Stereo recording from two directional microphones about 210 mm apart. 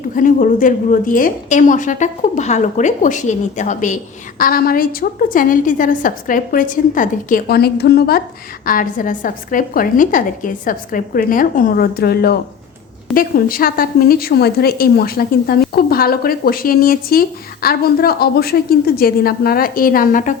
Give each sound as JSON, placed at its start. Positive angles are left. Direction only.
{"t": 0.2, "sound": "a woman's voice", "side_deg": 40}